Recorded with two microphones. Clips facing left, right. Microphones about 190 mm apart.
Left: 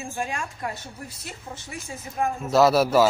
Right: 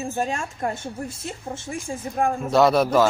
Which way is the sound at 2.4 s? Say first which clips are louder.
Even; centre (ahead or behind).